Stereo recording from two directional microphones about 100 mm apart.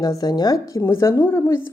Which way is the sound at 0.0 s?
40° left (ahead or behind).